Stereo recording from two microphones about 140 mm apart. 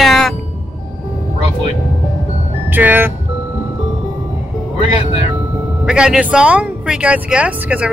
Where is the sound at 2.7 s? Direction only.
15° right (ahead or behind).